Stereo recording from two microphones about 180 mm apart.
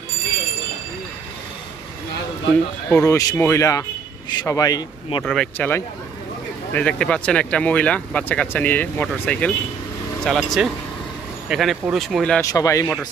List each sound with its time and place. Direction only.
2.9 s speech: 15° left (ahead or behind)
5.2 s speech: 5° left (ahead or behind)
12.4 s speech: 20° left (ahead or behind)